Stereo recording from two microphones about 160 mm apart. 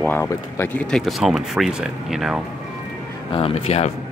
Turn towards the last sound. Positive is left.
turn(degrees=40)  # may be behind; listen again after turning